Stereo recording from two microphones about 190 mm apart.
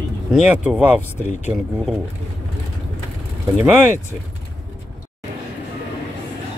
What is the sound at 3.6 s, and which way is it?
Speech, 10° right (ahead or behind).